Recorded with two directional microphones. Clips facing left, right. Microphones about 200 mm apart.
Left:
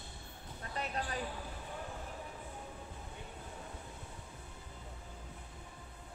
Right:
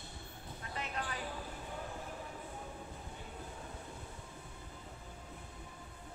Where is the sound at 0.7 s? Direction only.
35° left (ahead or behind).